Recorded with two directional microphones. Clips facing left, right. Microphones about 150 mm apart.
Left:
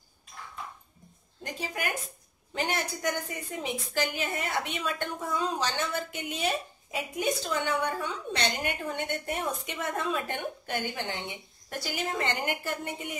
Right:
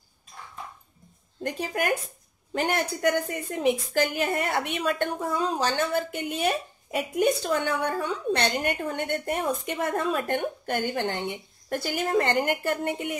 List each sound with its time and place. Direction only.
1.4 s a woman's voice: 50° right (ahead or behind)